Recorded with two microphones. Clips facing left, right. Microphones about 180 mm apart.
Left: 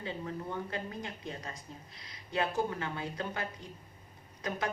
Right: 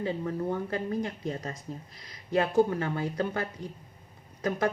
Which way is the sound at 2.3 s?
45° right (ahead or behind).